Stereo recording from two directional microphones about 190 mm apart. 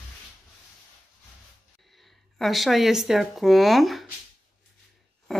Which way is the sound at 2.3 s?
Centre (ahead or behind).